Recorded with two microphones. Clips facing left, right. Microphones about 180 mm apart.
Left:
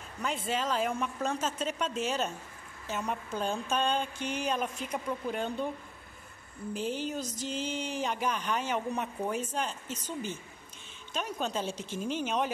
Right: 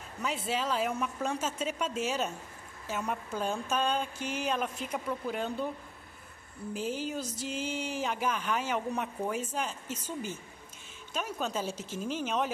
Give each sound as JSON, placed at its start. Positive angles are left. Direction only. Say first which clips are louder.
{"t": 0.2, "sound": "speech", "louder": "even", "side_deg": -5}
{"t": 6.7, "sound": "speech", "louder": "left 1 dB", "side_deg": -5}